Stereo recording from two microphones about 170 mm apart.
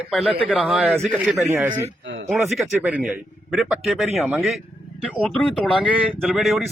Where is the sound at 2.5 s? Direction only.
Centre (ahead or behind).